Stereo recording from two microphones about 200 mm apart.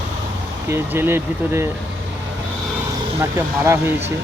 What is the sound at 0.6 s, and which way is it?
Speech, 10° right (ahead or behind).